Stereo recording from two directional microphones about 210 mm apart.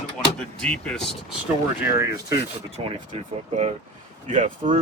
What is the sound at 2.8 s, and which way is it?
Speech, 25° right (ahead or behind).